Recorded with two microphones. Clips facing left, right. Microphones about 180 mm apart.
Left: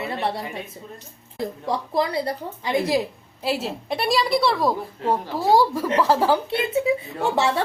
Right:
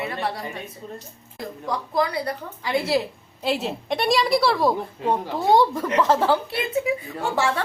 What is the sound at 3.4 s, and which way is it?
A woman's voice, 5° left (ahead or behind).